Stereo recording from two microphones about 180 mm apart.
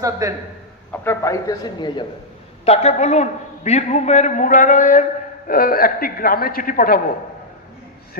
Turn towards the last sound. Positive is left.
turn(degrees=55)  # may be behind; listen again after turning